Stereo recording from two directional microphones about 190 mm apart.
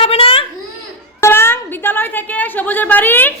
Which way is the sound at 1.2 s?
10° left (ahead or behind).